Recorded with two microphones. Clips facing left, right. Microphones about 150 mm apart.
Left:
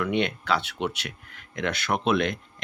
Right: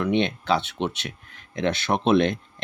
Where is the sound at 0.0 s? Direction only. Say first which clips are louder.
Right 3 dB; 25° right (ahead or behind).